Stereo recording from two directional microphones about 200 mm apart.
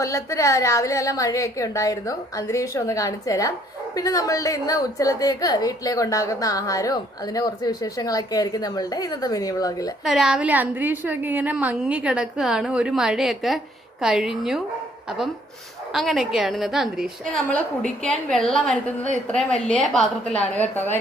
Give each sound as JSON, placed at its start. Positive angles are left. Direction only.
{"t": 0.0, "sound": "a woman's voice", "side_deg": 15}
{"t": 10.0, "sound": "a woman's voice", "side_deg": 0}
{"t": 15.9, "sound": "a woman's voice", "side_deg": 0}